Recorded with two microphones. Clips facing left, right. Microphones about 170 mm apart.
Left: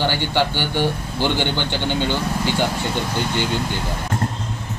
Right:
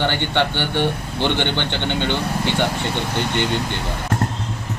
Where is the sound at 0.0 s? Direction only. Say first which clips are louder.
Even; 5° left (ahead or behind).